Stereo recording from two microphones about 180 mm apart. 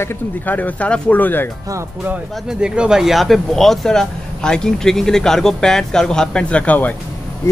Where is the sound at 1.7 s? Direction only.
15° right (ahead or behind).